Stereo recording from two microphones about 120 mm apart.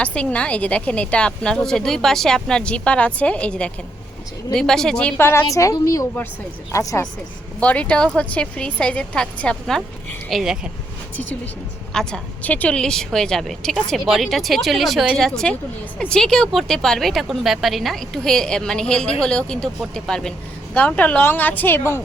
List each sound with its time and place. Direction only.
0.0 s a woman's voice: 10° left (ahead or behind)
7.6 s a woman's voice: 10° left (ahead or behind)
11.9 s a woman's voice: 10° left (ahead or behind)